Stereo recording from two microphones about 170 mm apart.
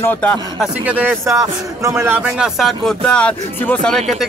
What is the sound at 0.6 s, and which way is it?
A man's voice, 10° right (ahead or behind).